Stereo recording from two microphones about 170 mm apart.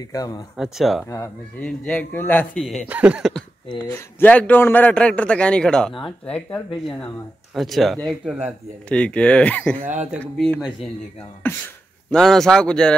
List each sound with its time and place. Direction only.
0.1 s speech: 20° left (ahead or behind)
0.6 s speech: centre (ahead or behind)
1.0 s a man's voice: 15° left (ahead or behind)
2.9 s speech: 10° right (ahead or behind)
3.9 s a man's voice: 10° left (ahead or behind)
11.4 s a sound: 10° left (ahead or behind)
12.2 s speech: centre (ahead or behind)